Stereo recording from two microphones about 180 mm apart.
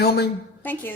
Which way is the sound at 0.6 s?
10° left (ahead or behind).